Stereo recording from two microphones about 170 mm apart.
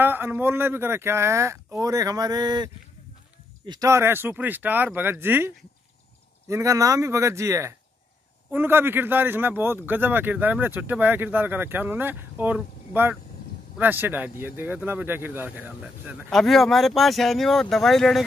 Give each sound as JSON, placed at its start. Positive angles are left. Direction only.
{"t": 0.0, "sound": "speech", "side_deg": -10}
{"t": 6.5, "sound": "speech", "side_deg": -20}
{"t": 16.3, "sound": "speech", "side_deg": 0}